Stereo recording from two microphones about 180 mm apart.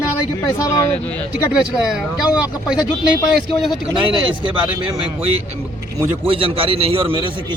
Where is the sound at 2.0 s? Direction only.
5° right (ahead or behind).